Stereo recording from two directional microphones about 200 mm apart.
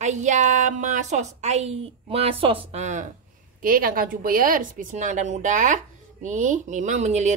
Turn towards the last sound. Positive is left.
turn(degrees=-35)  # may be behind; listen again after turning